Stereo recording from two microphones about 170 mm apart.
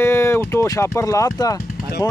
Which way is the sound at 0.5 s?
15° left (ahead or behind).